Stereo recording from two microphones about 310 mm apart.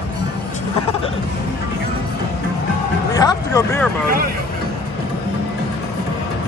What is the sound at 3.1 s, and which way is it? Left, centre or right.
Speech, centre.